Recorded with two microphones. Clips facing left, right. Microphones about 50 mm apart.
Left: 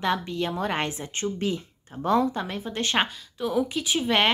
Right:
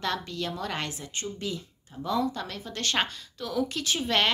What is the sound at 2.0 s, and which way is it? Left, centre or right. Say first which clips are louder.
Speech: left 5 dB; left.